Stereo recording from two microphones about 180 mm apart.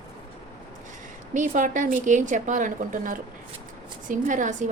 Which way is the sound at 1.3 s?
45° right (ahead or behind).